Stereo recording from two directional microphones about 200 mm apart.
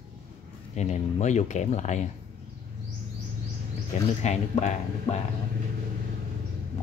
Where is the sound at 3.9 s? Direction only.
35° left (ahead or behind).